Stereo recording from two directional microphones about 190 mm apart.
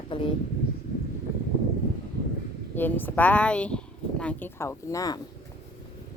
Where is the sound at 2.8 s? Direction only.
10° left (ahead or behind).